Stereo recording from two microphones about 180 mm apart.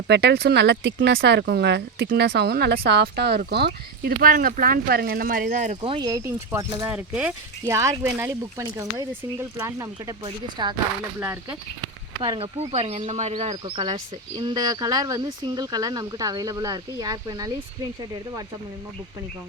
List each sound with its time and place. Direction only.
0.1 s speech: 70° right (ahead or behind); by 5.7 s 45° right (ahead or behind)
5.8 s speech: 25° right (ahead or behind); by 7.7 s 5° right (ahead or behind)
7.7 s speech: 15° right (ahead or behind)
11.2 s speech: 15° right (ahead or behind)
12.2 s speech: 30° right (ahead or behind)